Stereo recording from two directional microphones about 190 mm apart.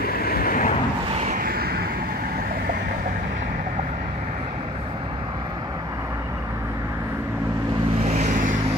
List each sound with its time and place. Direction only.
0.0 s vehicle: 55° left (ahead or behind)
1.1 s a sound: 45° right (ahead or behind)
8.1 s vehicle: 40° right (ahead or behind)